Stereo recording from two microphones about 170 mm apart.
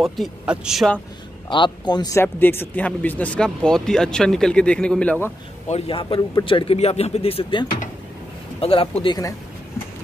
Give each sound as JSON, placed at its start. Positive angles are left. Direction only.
{"t": 0.0, "sound": "speech", "side_deg": 0}
{"t": 1.5, "sound": "speech", "side_deg": 25}
{"t": 2.2, "sound": "speech", "side_deg": 10}
{"t": 5.7, "sound": "a man's voice", "side_deg": 35}
{"t": 9.0, "sound": "speech", "side_deg": 25}